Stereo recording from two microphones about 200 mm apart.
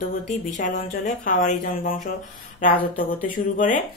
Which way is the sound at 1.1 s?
40° left (ahead or behind).